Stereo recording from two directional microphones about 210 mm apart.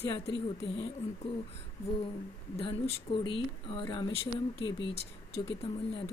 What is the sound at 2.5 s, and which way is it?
Speech, 25° left (ahead or behind).